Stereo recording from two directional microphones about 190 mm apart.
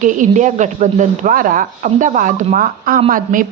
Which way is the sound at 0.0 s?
40° right (ahead or behind).